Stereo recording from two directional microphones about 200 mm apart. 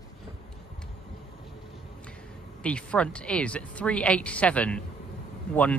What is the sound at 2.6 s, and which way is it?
A woman's voice, 5° left (ahead or behind).